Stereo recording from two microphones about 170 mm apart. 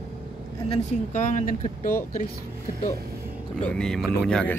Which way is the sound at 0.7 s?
45° left (ahead or behind).